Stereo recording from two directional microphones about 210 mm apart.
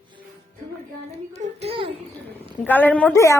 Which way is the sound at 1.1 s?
30° right (ahead or behind).